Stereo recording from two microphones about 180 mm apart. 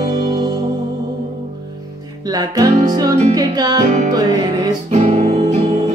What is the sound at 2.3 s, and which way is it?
Music, 20° right (ahead or behind).